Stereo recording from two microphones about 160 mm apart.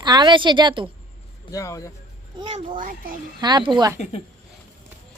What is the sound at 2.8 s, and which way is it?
Speech, 55° right (ahead or behind).